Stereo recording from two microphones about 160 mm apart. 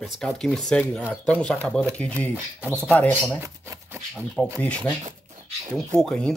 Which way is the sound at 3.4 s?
20° right (ahead or behind).